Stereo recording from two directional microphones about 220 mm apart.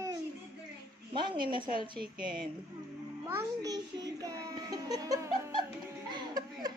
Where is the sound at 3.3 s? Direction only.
15° right (ahead or behind).